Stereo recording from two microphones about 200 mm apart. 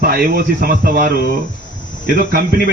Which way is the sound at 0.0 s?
50° right (ahead or behind).